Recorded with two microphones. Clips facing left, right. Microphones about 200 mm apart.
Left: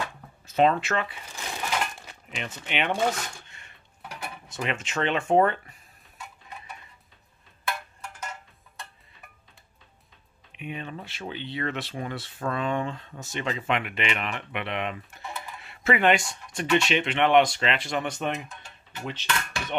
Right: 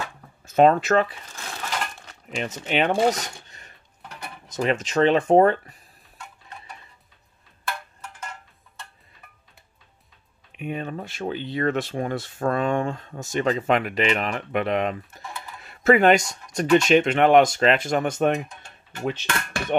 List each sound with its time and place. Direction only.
0.5 s speech: 45° right (ahead or behind)
1.3 s crushing: 15° left (ahead or behind)
2.3 s speech: 40° right (ahead or behind)
6.1 s music: 5° left (ahead or behind)
10.5 s speech: 45° right (ahead or behind)